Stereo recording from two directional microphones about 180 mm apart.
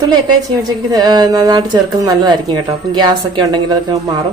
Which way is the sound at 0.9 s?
20° right (ahead or behind).